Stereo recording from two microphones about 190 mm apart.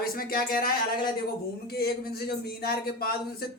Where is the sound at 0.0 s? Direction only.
50° left (ahead or behind).